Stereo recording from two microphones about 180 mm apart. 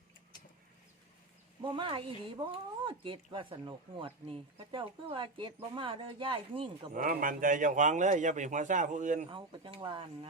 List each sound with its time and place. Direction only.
1.6 s speech: 25° right (ahead or behind)
6.9 s a man's voice: 50° right (ahead or behind)
9.3 s speech: 30° right (ahead or behind)